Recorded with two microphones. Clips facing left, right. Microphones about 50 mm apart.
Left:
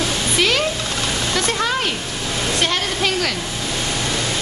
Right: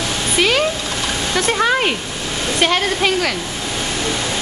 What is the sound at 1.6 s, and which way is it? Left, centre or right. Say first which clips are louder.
Speech: right 5 dB; right.